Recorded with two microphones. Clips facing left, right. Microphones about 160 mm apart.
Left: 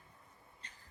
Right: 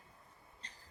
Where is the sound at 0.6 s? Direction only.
35° right (ahead or behind).